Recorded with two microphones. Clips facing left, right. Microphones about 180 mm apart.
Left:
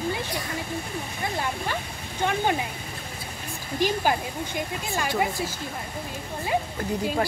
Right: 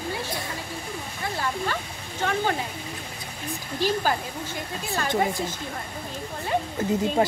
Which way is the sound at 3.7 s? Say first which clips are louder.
Left 1 dB; 15° left (ahead or behind).